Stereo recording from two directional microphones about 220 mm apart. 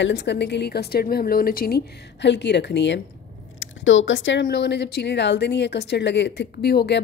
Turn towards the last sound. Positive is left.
turn(degrees=50)  # may be behind; listen again after turning